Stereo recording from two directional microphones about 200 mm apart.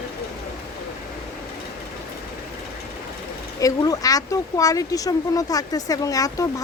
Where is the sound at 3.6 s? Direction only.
20° left (ahead or behind).